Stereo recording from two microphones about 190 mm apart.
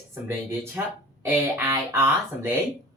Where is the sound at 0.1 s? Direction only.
10° right (ahead or behind).